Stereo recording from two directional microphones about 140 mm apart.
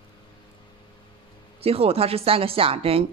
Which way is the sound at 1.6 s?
45° right (ahead or behind).